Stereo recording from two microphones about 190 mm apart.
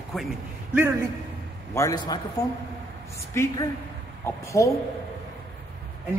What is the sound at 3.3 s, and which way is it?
A woman's voice, 15° left (ahead or behind).